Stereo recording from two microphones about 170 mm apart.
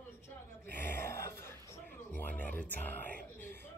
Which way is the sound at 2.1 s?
10° left (ahead or behind).